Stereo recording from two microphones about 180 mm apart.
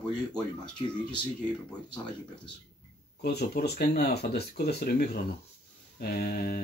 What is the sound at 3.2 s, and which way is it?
Speech, 60° left (ahead or behind).